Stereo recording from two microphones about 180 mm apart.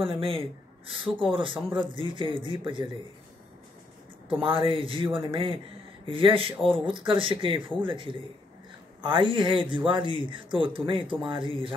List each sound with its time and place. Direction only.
0.0 s speech: 30° right (ahead or behind)
4.4 s speech: 30° right (ahead or behind)